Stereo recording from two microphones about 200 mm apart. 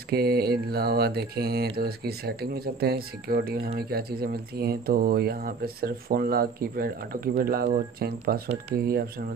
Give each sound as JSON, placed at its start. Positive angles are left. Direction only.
{"t": 0.1, "sound": "mantra", "side_deg": -50}